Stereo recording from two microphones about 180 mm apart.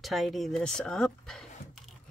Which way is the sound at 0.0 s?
Centre (ahead or behind).